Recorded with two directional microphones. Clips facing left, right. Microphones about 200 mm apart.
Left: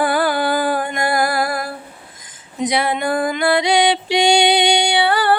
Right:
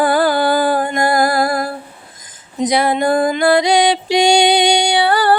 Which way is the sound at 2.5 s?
40° right (ahead or behind).